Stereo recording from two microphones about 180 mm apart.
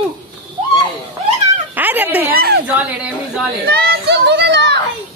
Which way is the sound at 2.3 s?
60° right (ahead or behind).